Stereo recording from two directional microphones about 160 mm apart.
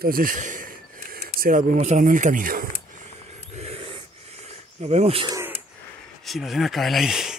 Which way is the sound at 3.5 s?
40° right (ahead or behind).